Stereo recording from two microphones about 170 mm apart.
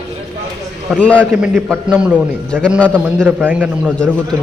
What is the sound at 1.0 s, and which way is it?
Speech, 5° left (ahead or behind).